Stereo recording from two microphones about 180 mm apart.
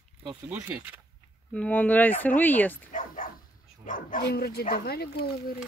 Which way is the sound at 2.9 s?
45° left (ahead or behind).